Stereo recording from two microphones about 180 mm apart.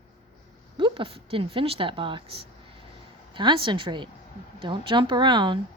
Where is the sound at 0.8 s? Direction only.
30° right (ahead or behind).